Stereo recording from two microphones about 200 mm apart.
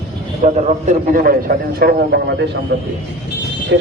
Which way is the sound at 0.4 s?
35° right (ahead or behind).